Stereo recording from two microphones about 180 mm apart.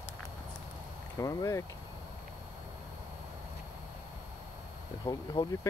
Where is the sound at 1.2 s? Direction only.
20° left (ahead or behind).